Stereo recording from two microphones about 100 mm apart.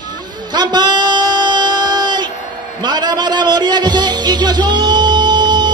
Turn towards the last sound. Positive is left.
turn(degrees=-50)  # may be behind; listen again after turning